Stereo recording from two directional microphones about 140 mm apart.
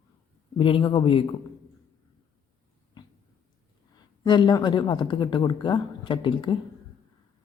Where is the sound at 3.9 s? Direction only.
30° left (ahead or behind).